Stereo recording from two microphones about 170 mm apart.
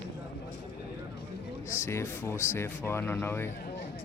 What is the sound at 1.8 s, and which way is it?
Speech, 15° left (ahead or behind).